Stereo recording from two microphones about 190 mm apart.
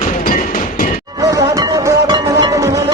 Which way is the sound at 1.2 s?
15° right (ahead or behind).